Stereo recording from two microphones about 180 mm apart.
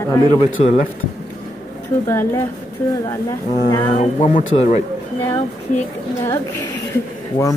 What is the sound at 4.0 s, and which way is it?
Speech, 40° left (ahead or behind).